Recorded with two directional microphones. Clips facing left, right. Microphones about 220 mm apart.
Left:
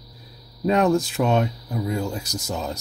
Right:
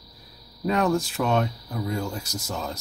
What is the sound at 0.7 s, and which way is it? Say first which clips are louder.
Speech: left 4 dB; 20° left (ahead or behind).